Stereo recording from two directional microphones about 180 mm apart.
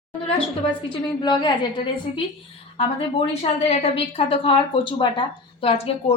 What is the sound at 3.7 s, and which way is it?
Speech, 30° left (ahead or behind).